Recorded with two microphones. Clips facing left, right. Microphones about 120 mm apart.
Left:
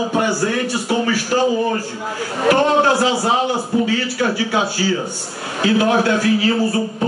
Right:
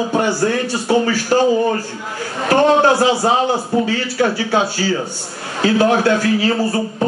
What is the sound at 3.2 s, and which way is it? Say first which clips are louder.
A man's voice: right 2 dB; 35° right (ahead or behind).